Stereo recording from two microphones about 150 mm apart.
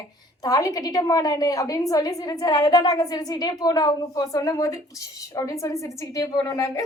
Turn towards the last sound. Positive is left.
turn(degrees=20)  # may be behind; listen again after turning